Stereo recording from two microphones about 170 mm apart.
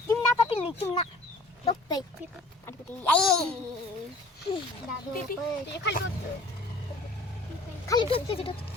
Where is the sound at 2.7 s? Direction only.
5° left (ahead or behind).